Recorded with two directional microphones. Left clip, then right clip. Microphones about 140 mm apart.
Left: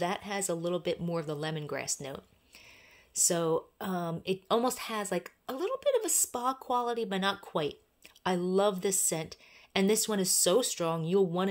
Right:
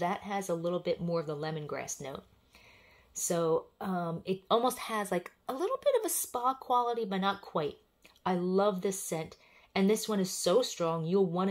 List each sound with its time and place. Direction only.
0.0 s speech: 25° left (ahead or behind)
3.3 s speech: 30° left (ahead or behind); by 6.1 s 10° left (ahead or behind)
6.3 s speech: 25° left (ahead or behind)